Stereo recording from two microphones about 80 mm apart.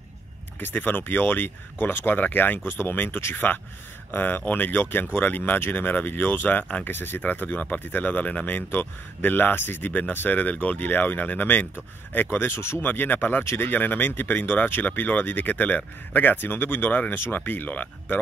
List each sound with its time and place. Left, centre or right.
0.6 s speech: left